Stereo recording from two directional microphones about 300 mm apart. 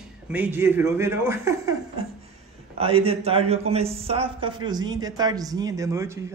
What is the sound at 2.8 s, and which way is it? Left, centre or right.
A man's voice, centre.